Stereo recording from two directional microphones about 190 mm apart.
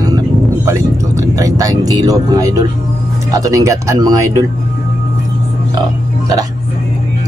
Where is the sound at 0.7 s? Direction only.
15° right (ahead or behind).